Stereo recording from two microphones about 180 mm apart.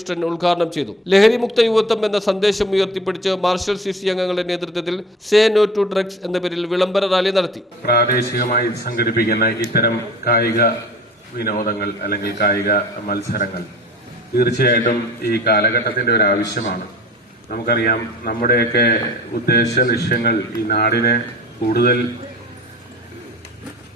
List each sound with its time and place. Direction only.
0.0 s a man's voice: centre (ahead or behind)
7.9 s a man's voice: 60° left (ahead or behind)
17.5 s a man's voice: 55° left (ahead or behind)